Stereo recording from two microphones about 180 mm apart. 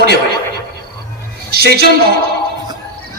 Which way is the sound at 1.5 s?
60° right (ahead or behind).